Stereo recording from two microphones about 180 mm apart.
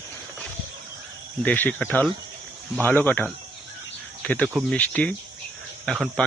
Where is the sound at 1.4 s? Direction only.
10° left (ahead or behind).